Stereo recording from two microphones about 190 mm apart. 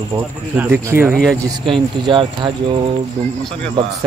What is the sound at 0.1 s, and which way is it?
Speech, 15° right (ahead or behind).